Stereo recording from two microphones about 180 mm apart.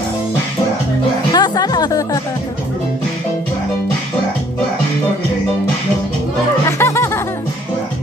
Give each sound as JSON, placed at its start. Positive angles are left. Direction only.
{"t": 1.3, "sound": "speech", "side_deg": 25}
{"t": 6.8, "sound": "music", "side_deg": 15}